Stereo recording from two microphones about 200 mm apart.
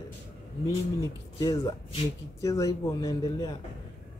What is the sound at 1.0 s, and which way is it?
Speech, 20° left (ahead or behind).